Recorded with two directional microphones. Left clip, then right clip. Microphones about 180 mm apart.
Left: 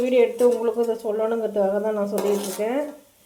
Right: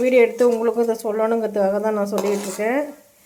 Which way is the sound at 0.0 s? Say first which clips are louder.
Right 3 dB; 20° right (ahead or behind).